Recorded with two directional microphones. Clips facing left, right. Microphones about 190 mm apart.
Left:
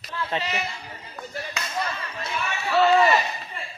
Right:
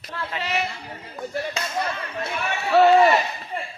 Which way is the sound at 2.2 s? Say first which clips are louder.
Right 2 dB; 55° right (ahead or behind).